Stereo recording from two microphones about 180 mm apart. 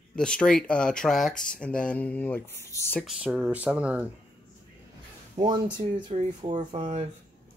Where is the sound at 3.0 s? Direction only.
Centre (ahead or behind).